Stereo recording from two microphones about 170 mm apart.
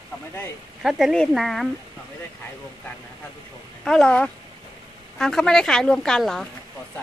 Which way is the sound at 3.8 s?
5° left (ahead or behind).